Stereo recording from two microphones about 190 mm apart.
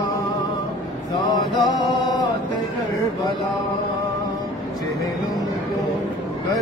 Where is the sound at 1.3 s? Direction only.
20° left (ahead or behind).